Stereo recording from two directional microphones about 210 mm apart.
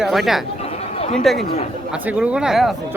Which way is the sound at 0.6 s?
30° left (ahead or behind).